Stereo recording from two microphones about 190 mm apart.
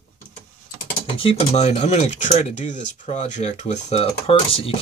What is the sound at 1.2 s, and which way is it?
Speech, 30° left (ahead or behind).